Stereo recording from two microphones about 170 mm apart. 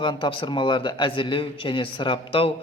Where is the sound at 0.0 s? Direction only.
30° left (ahead or behind).